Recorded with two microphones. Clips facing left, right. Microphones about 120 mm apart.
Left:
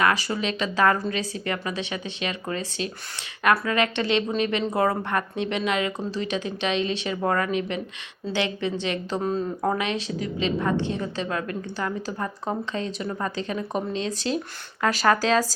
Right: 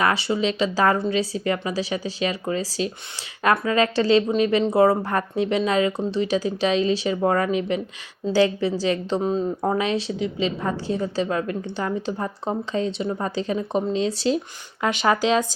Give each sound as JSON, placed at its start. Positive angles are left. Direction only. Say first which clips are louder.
{"t": 0.0, "sound": "a woman's voice", "louder": "right 2 dB", "side_deg": -30}
{"t": 14.8, "sound": "speech", "louder": "right 1 dB", "side_deg": -20}